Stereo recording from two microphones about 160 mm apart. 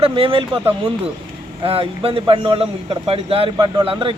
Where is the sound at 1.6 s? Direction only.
35° right (ahead or behind).